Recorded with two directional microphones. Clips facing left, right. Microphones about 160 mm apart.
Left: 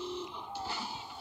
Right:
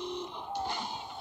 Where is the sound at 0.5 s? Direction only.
5° left (ahead or behind).